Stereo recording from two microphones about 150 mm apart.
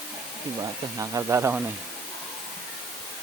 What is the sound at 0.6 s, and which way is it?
Speech, 25° right (ahead or behind).